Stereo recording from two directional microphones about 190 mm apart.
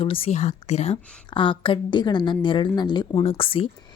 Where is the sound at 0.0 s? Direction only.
30° left (ahead or behind).